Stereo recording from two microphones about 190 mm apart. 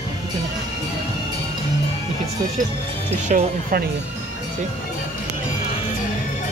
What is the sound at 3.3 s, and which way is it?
Speech, 40° right (ahead or behind).